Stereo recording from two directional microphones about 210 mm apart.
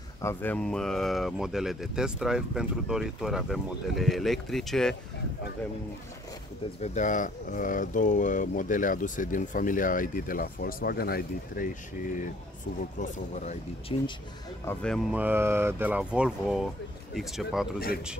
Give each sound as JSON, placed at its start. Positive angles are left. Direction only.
{"t": 0.2, "sound": "speech", "side_deg": 10}
{"t": 6.8, "sound": "speech", "side_deg": 35}
{"t": 13.0, "sound": "speech", "side_deg": 35}
{"t": 14.6, "sound": "speech", "side_deg": 10}
{"t": 15.1, "sound": "speech", "side_deg": -10}